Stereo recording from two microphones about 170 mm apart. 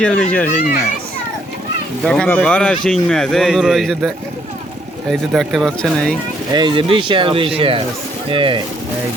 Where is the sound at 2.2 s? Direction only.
10° left (ahead or behind).